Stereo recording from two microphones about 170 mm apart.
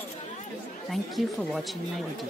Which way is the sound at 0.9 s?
Centre (ahead or behind).